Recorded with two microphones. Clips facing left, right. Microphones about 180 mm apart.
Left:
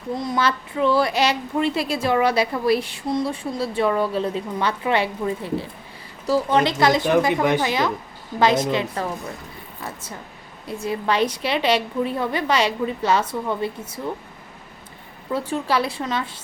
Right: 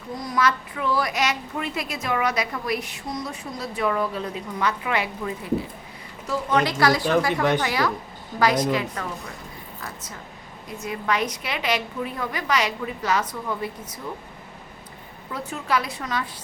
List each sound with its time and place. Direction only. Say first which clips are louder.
0.2 s speech: right 1 dB; 25° left (ahead or behind)
10.8 s speech: left 4 dB; 30° left (ahead or behind)
15.3 s speech: left 4 dB; 30° left (ahead or behind)